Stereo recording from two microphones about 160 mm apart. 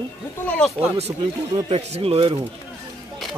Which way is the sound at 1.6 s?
40° right (ahead or behind).